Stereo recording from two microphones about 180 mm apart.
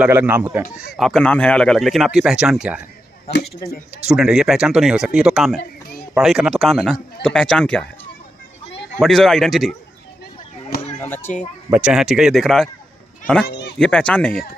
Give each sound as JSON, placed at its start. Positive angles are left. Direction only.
{"t": 0.0, "sound": "speech", "side_deg": -10}
{"t": 4.1, "sound": "speech", "side_deg": -5}
{"t": 9.0, "sound": "speech", "side_deg": 0}
{"t": 11.0, "sound": "speech", "side_deg": 15}
{"t": 11.7, "sound": "speech", "side_deg": -5}
{"t": 13.5, "sound": "speech", "side_deg": 70}
{"t": 13.7, "sound": "speech", "side_deg": 5}